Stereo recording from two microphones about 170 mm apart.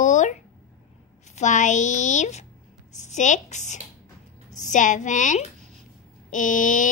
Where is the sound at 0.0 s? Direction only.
45° left (ahead or behind).